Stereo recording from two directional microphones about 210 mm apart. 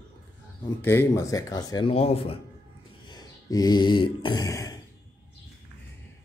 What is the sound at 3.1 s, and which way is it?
Throat clearing, 20° left (ahead or behind).